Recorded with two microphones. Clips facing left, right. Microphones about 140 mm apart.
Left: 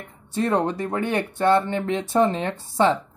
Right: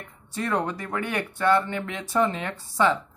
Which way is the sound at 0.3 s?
30° left (ahead or behind).